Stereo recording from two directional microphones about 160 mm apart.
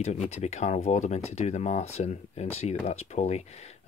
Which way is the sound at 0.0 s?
45° left (ahead or behind).